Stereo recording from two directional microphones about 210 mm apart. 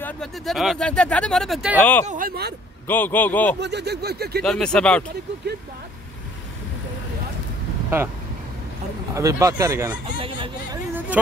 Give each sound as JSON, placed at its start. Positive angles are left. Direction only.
{"t": 0.0, "sound": "a man's voice", "side_deg": 0}
{"t": 2.0, "sound": "speech", "side_deg": -40}
{"t": 2.9, "sound": "a man's voice", "side_deg": 10}
{"t": 3.6, "sound": "speech", "side_deg": -50}
{"t": 4.4, "sound": "speech", "side_deg": 5}
{"t": 9.1, "sound": "speech", "side_deg": -15}